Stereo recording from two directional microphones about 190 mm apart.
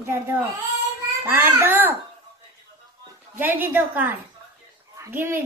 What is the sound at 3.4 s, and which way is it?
A woman's voice, 10° right (ahead or behind).